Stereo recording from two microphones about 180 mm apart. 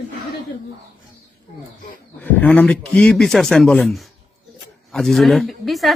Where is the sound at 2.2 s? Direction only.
10° left (ahead or behind).